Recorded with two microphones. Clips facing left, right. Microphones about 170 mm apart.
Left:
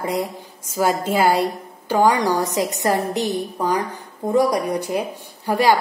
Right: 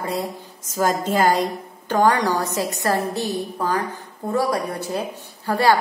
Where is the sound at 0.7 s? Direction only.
10° left (ahead or behind).